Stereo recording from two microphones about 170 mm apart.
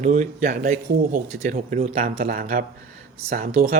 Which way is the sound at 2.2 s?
55° right (ahead or behind).